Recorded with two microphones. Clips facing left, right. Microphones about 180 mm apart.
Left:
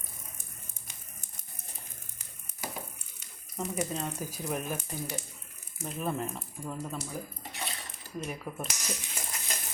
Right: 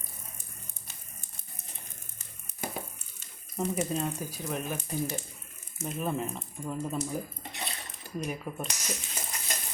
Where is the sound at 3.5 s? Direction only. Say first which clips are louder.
Right 3 dB; 20° right (ahead or behind).